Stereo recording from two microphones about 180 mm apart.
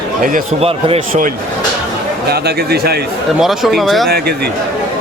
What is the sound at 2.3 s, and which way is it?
Speech, 60° right (ahead or behind).